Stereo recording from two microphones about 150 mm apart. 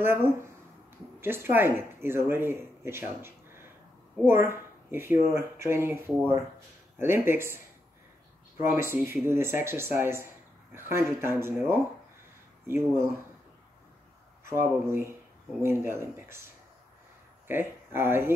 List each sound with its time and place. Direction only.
0.0 s speech: 15° right (ahead or behind)
8.7 s speech: 15° right (ahead or behind)
14.4 s speech: 15° right (ahead or behind)
17.5 s speech: 15° right (ahead or behind)